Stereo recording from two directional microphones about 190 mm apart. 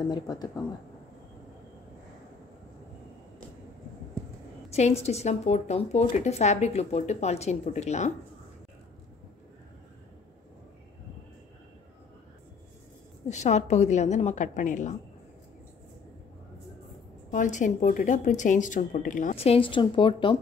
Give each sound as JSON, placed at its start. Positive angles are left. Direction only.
{"t": 0.1, "sound": "speech", "side_deg": 20}
{"t": 4.6, "sound": "speech", "side_deg": 35}
{"t": 13.3, "sound": "speech", "side_deg": 35}
{"t": 17.3, "sound": "speech", "side_deg": 40}